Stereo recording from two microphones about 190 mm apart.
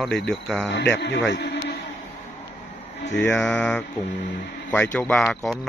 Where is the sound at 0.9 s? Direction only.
70° left (ahead or behind).